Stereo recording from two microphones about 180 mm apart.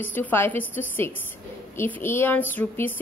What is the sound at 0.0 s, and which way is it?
A woman's voice, 10° left (ahead or behind).